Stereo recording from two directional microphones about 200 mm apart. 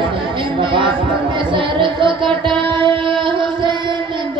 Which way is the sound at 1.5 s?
25° right (ahead or behind).